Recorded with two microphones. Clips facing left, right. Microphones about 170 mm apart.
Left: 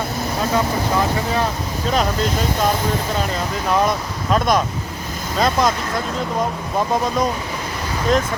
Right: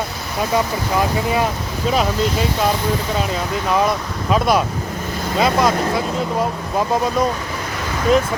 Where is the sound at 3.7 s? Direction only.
Centre (ahead or behind).